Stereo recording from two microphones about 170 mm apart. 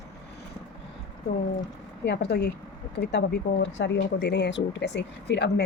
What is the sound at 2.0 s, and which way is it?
Speech, 80° left.